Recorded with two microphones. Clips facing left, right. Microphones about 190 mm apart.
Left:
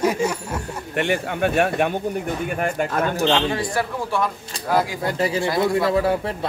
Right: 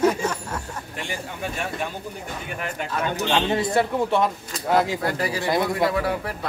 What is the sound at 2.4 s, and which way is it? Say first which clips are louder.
Speech: left 6 dB; 50° left (ahead or behind).